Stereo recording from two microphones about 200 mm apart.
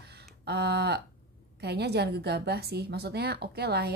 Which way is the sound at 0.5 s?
55° right (ahead or behind).